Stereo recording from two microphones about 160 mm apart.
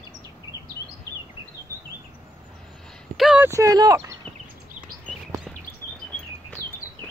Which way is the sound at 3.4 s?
20° right (ahead or behind).